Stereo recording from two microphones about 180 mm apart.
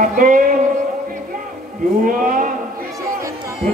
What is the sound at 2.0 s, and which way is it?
Speech, 50° right (ahead or behind).